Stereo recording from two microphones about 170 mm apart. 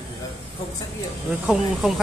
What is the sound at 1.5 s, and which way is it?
Speech, centre (ahead or behind).